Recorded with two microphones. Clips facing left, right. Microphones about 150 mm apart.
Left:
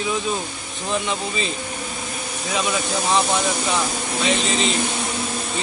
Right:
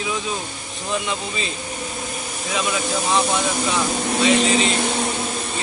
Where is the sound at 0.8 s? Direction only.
Centre (ahead or behind).